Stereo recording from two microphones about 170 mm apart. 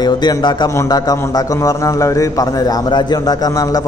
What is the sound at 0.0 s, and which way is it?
A man's voice, 25° left (ahead or behind).